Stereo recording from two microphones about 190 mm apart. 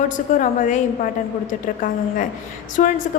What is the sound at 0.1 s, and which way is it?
A woman's voice, 40° left (ahead or behind).